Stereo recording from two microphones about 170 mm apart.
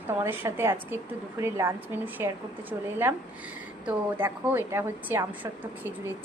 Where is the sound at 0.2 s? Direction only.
15° right (ahead or behind).